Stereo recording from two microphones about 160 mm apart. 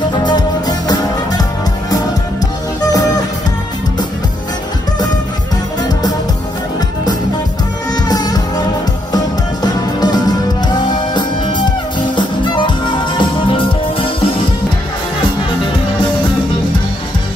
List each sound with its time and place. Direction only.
0.1 s music: 25° left (ahead or behind)
7.9 s music: 25° left (ahead or behind)